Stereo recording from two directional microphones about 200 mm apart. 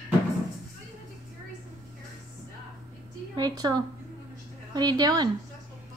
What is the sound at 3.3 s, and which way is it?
A woman's voice, 20° right (ahead or behind).